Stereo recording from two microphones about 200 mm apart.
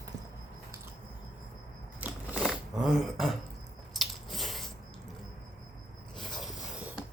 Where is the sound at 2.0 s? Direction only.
5° right (ahead or behind).